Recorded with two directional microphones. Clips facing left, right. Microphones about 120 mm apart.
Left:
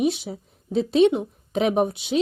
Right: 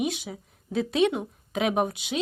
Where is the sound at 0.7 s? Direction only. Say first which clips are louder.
Left 6 dB; 25° left (ahead or behind).